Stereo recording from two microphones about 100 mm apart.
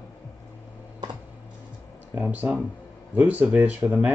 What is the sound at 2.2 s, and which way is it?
Speech, 20° right (ahead or behind).